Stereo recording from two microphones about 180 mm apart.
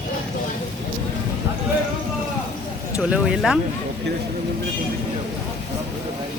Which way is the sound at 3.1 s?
5° right (ahead or behind).